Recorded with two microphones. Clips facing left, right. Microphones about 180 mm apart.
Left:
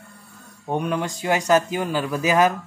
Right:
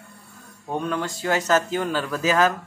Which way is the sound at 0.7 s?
15° left (ahead or behind).